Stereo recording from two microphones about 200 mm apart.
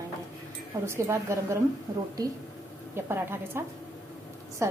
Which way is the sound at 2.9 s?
10° right (ahead or behind).